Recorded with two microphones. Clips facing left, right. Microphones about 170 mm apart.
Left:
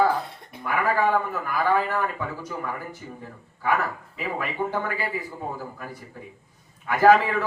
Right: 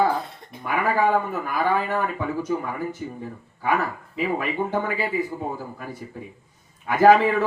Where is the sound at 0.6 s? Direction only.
20° right (ahead or behind).